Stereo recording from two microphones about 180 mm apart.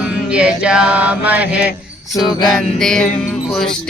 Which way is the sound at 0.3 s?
5° right (ahead or behind).